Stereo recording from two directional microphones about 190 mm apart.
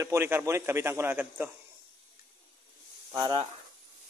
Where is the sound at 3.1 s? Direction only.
20° right (ahead or behind).